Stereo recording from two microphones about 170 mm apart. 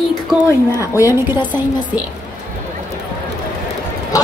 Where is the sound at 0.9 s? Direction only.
15° right (ahead or behind).